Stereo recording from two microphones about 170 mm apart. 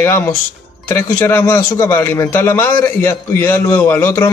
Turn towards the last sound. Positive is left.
turn(degrees=15)  # may be behind; listen again after turning